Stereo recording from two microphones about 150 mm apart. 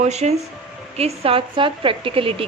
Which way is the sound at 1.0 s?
40° right (ahead or behind).